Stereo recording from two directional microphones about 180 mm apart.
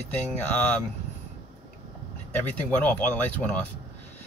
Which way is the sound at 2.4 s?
10° left (ahead or behind).